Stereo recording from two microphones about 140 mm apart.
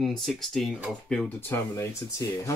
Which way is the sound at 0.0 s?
Centre (ahead or behind).